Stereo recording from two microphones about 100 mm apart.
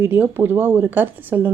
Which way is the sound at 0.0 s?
20° right (ahead or behind).